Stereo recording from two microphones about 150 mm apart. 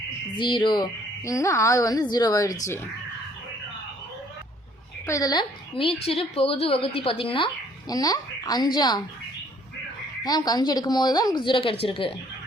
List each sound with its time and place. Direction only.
0.3 s a woman's voice: 30° left (ahead or behind)
5.0 s a woman's voice: 20° left (ahead or behind)
10.2 s a woman's voice: 25° left (ahead or behind)